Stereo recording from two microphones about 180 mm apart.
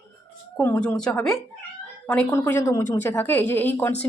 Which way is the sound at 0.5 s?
10° left (ahead or behind).